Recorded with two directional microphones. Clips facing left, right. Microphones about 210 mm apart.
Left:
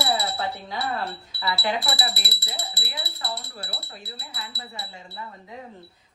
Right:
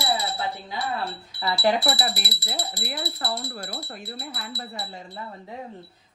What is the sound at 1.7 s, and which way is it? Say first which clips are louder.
A woman's voice: right 6 dB; 50° right (ahead or behind).